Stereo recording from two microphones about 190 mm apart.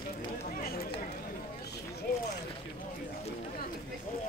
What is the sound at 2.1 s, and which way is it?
Speech, 50° left (ahead or behind).